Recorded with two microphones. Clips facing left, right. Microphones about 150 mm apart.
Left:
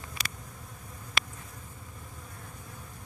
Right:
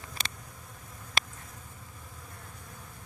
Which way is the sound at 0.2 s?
25° right (ahead or behind).